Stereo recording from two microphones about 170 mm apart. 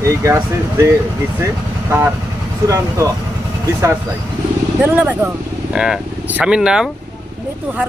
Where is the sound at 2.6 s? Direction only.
20° right (ahead or behind).